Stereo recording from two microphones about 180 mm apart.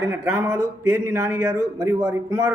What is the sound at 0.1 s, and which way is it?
Speech, 15° right (ahead or behind).